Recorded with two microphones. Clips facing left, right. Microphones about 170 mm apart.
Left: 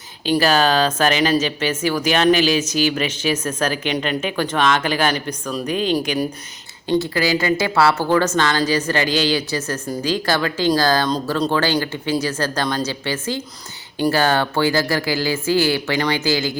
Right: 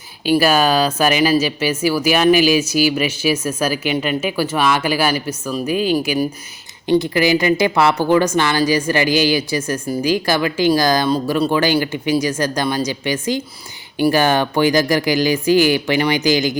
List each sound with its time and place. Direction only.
0.3 s speech: 10° right (ahead or behind)